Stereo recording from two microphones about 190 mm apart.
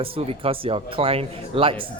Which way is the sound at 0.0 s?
30° right (ahead or behind).